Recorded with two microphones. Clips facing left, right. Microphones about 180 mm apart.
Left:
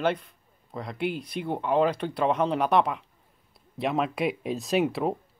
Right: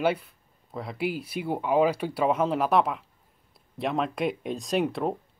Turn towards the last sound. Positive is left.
turn(degrees=5)  # may be behind; listen again after turning